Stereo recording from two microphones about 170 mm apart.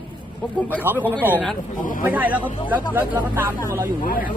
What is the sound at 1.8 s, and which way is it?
Speech, 50° left (ahead or behind).